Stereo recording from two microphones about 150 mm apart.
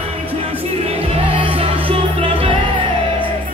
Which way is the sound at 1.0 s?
35° right (ahead or behind).